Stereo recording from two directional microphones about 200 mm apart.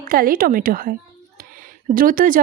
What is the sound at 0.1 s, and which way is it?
Speech, 45° right (ahead or behind).